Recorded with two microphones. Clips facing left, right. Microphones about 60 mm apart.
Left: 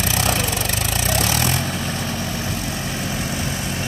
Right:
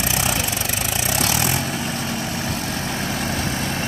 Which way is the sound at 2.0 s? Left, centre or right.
Right.